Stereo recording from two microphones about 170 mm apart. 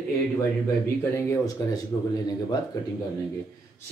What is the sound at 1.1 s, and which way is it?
Speech, 15° left (ahead or behind).